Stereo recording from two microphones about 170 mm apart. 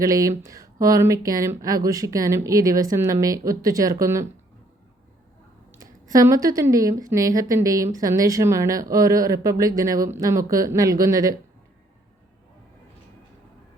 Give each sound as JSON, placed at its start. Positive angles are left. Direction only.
{"t": 0.0, "sound": "speech", "side_deg": -20}
{"t": 5.8, "sound": "a woman's voice", "side_deg": -20}